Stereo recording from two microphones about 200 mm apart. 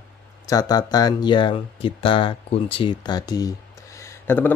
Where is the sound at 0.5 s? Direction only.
20° left (ahead or behind).